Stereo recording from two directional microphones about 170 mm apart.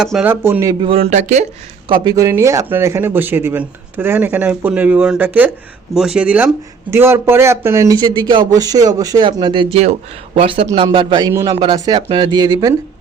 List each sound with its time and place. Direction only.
0.0 s speech: 5° right (ahead or behind)
0.8 s speech: 35° right (ahead or behind)
1.9 s speech: 20° right (ahead or behind)